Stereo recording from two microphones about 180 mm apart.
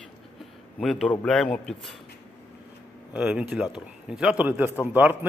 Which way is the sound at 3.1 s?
5° right (ahead or behind).